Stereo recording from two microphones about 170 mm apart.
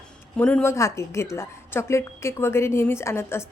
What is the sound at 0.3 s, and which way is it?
A woman's voice, 10° left (ahead or behind).